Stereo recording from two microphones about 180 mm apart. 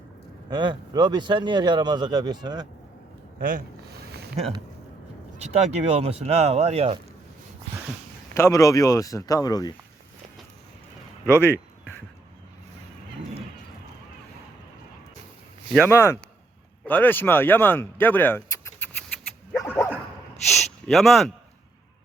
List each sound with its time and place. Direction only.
0.5 s a man's voice: 25° right (ahead or behind)
5.4 s speech: 35° right (ahead or behind)
8.3 s speech: 15° left (ahead or behind)
11.3 s a sound: 15° left (ahead or behind)
15.8 s speech: 15° left (ahead or behind)
19.5 s dog: 15° left (ahead or behind)
20.5 s speech: centre (ahead or behind)